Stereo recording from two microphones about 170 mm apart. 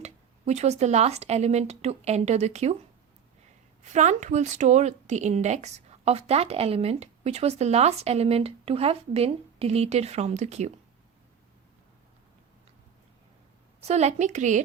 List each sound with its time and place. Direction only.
0.0 s speech: 40° right (ahead or behind)
3.8 s speech: 45° right (ahead or behind)
13.8 s a woman's voice: 40° right (ahead or behind)